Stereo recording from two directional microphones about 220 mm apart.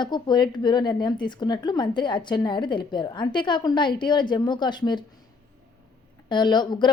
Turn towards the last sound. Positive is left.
turn(degrees=20)  # may be behind; listen again after turning